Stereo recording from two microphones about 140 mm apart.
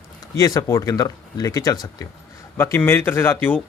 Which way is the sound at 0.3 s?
25° left (ahead or behind).